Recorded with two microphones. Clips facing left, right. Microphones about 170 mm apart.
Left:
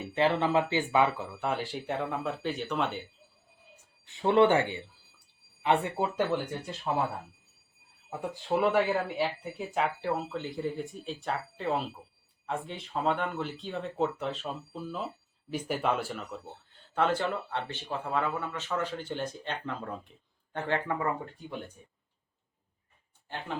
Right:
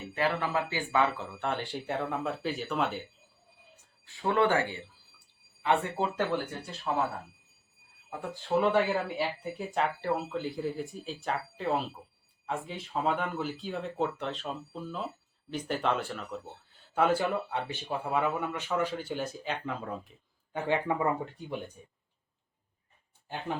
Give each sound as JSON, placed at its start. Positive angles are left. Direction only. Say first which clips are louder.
{"t": 0.1, "sound": "speech", "louder": "left 4 dB", "side_deg": 20}
{"t": 1.4, "sound": "speech", "louder": "left 1 dB", "side_deg": 0}
{"t": 4.0, "sound": "speech", "louder": "left 4 dB", "side_deg": 20}
{"t": 8.5, "sound": "speech", "louder": "even", "side_deg": 5}
{"t": 16.9, "sound": "speech", "louder": "right 2 dB", "side_deg": -10}